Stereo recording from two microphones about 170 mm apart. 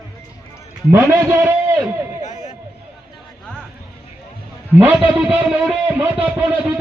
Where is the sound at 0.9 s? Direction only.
15° right (ahead or behind).